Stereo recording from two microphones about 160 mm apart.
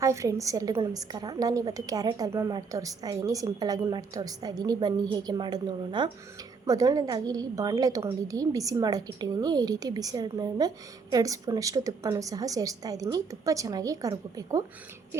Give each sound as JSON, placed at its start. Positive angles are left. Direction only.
{"t": 0.0, "sound": "a woman's voice", "side_deg": -20}